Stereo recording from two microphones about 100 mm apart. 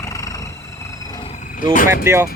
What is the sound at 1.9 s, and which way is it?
Vehicle, 25° right (ahead or behind).